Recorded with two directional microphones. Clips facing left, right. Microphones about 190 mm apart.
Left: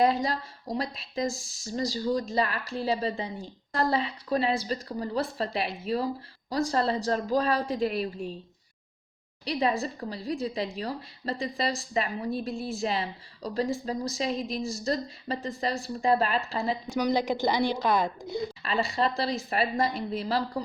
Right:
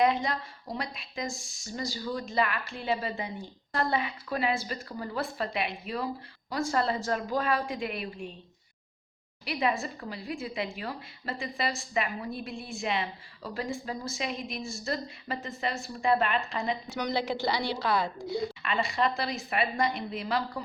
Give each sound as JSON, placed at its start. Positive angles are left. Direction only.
{"t": 0.0, "sound": "a woman's voice", "side_deg": 35}
{"t": 1.3, "sound": "speech", "side_deg": 0}
{"t": 1.6, "sound": "a woman's voice", "side_deg": 35}
{"t": 9.4, "sound": "a woman's voice", "side_deg": 30}
{"t": 12.5, "sound": "speech", "side_deg": 0}
{"t": 12.8, "sound": "a woman's voice", "side_deg": 35}
{"t": 14.6, "sound": "speech", "side_deg": 0}
{"t": 14.8, "sound": "a woman's voice", "side_deg": 35}
{"t": 16.9, "sound": "a woman's voice", "side_deg": 15}
{"t": 18.6, "sound": "a woman's voice", "side_deg": 35}